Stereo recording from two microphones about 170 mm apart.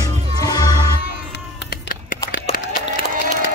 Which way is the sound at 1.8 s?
55° left (ahead or behind).